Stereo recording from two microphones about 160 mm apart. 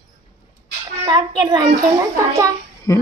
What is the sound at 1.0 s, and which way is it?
Speech, 25° right (ahead or behind).